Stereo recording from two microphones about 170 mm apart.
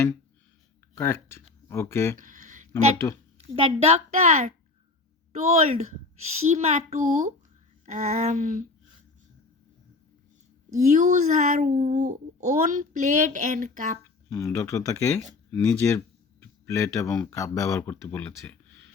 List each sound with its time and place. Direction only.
0.9 s speech: 15° left (ahead or behind)
2.1 s a sound: 50° right (ahead or behind)
3.3 s a woman's voice: 35° right (ahead or behind)
10.7 s a woman's voice: 45° right (ahead or behind)
14.3 s speech: 15° left (ahead or behind)
15.5 s speech: 5° left (ahead or behind)
16.4 s a sound: 15° left (ahead or behind)
17.3 s speech: 20° left (ahead or behind)